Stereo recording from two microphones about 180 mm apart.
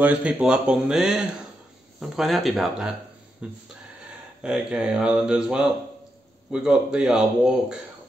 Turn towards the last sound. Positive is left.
turn(degrees=-5)  # may be behind; listen again after turning